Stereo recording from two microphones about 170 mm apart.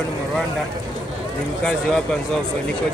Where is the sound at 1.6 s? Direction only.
5° left (ahead or behind).